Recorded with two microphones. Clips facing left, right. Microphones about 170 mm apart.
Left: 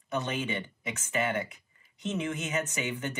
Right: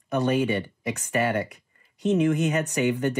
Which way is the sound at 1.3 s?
65° right (ahead or behind).